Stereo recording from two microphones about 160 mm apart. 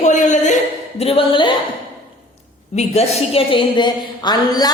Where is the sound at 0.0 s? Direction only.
50° left (ahead or behind); by 1.5 s 30° left (ahead or behind).